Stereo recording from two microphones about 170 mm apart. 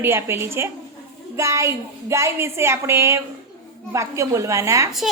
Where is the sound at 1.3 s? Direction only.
15° right (ahead or behind).